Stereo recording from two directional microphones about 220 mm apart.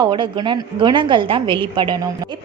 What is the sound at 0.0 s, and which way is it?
A woman's voice, 20° right (ahead or behind).